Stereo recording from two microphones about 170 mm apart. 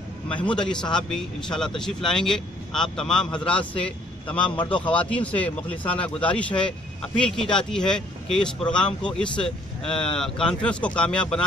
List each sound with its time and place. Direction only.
0.3 s a man's voice: 5° left (ahead or behind)
4.3 s a man's voice: 30° left (ahead or behind)
4.6 s a man's voice: 10° left (ahead or behind)